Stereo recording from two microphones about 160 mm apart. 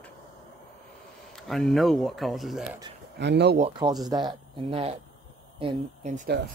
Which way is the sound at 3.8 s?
25° right (ahead or behind).